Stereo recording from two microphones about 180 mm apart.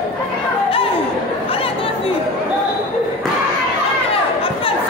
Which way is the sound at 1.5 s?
30° left (ahead or behind).